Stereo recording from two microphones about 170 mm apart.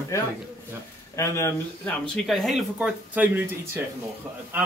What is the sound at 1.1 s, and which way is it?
Speech, 15° left (ahead or behind).